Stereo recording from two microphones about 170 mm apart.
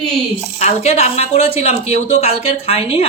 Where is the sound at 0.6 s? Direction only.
40° left (ahead or behind).